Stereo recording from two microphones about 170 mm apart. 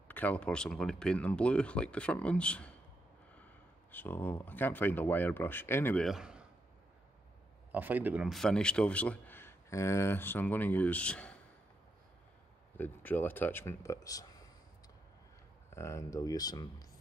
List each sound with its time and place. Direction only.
0.1 s a man's voice: 10° left (ahead or behind)
3.9 s a man's voice: 10° left (ahead or behind)
6.0 s a man's voice: 5° right (ahead or behind)
7.7 s a man's voice: 10° right (ahead or behind); by 11.3 s 10° left (ahead or behind)
12.7 s speech: 10° left (ahead or behind)
15.7 s speech: 15° left (ahead or behind)